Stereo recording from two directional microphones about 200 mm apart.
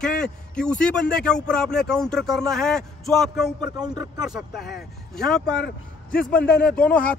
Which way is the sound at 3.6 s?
20° right (ahead or behind).